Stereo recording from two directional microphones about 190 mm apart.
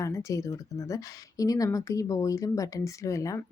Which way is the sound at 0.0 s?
15° left (ahead or behind).